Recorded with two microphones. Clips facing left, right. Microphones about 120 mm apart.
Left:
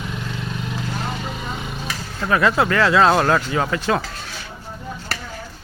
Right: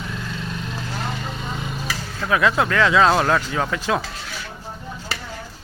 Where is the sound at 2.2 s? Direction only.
Centre (ahead or behind).